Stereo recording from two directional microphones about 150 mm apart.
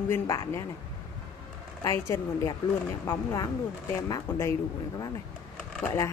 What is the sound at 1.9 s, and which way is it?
Speech, 20° left (ahead or behind).